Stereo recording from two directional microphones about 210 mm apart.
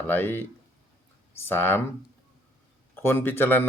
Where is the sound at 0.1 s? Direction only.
10° left (ahead or behind).